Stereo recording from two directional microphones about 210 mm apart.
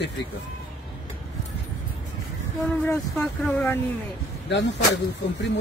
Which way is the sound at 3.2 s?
10° left (ahead or behind).